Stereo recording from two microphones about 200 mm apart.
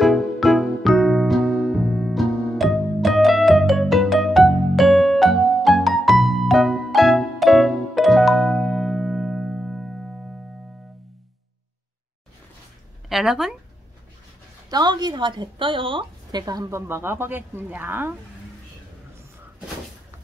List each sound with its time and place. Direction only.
0.0 s music: centre (ahead or behind)
13.1 s a sound: centre (ahead or behind)
14.7 s a woman's voice: 20° right (ahead or behind)